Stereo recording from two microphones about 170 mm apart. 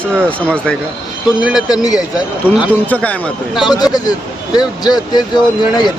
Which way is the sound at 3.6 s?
25° left (ahead or behind).